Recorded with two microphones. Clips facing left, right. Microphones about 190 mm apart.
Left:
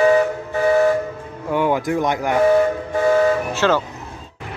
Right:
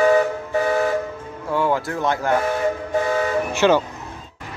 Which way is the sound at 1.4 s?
15° left (ahead or behind).